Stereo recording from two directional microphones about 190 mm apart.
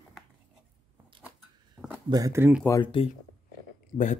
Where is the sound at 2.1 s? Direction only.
15° right (ahead or behind).